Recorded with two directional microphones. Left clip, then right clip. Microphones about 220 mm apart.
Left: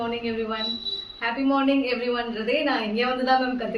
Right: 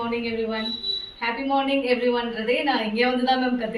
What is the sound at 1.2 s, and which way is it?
A woman's voice, 15° left (ahead or behind).